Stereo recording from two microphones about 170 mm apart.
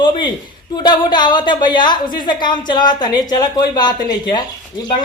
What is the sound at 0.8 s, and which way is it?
Speech, 25° left (ahead or behind).